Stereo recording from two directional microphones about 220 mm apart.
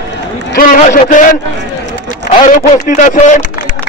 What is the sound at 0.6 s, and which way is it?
Speech, 35° left (ahead or behind).